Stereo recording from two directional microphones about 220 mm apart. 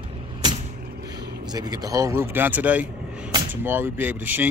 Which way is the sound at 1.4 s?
20° right (ahead or behind).